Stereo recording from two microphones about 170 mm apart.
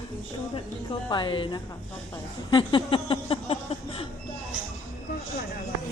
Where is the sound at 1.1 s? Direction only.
30° left (ahead or behind).